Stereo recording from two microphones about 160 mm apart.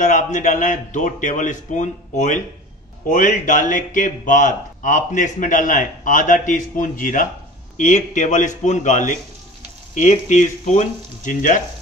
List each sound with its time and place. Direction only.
0.0 s speech: 50° left (ahead or behind)